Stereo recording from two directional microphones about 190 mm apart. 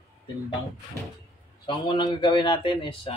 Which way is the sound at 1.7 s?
25° left (ahead or behind).